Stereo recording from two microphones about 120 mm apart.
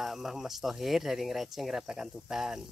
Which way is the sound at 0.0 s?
Centre (ahead or behind).